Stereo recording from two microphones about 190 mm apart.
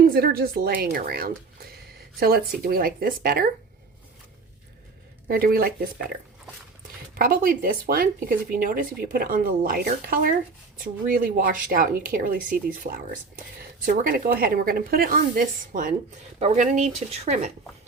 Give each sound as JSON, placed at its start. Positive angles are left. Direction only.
{"t": 0.0, "sound": "speech", "side_deg": -50}
{"t": 5.3, "sound": "speech", "side_deg": -50}
{"t": 7.2, "sound": "speech", "side_deg": -50}